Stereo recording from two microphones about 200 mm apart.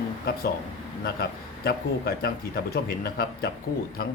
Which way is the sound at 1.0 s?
50° left (ahead or behind).